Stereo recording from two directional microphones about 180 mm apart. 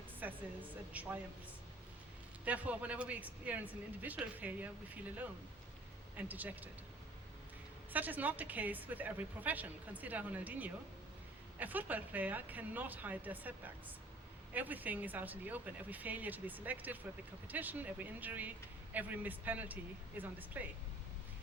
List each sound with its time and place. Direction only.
0.2 s a woman's voice: 10° right (ahead or behind)
2.4 s a woman's voice: 5° right (ahead or behind)
6.1 s a woman's voice: 10° right (ahead or behind)
7.9 s a woman's voice: 10° right (ahead or behind)
14.5 s a woman's voice: 10° right (ahead or behind)